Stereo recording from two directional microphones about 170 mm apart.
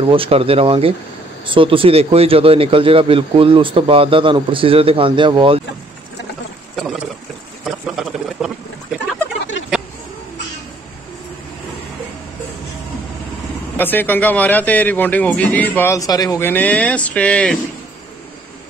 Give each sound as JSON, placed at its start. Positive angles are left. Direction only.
{"t": 0.0, "sound": "a man's voice", "side_deg": -30}
{"t": 7.6, "sound": "a sound", "side_deg": 0}
{"t": 13.7, "sound": "a man's voice", "side_deg": 10}